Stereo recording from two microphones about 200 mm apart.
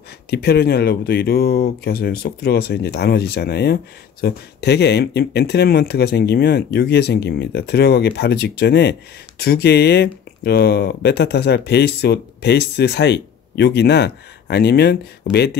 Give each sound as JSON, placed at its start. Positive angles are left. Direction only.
{"t": 0.3, "sound": "speech", "side_deg": 55}